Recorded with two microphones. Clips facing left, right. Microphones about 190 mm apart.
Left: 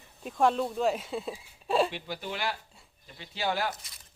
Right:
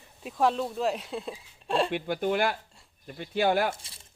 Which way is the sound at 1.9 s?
55° right (ahead or behind).